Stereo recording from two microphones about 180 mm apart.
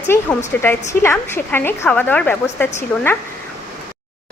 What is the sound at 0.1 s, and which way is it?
A woman's voice, 15° left (ahead or behind).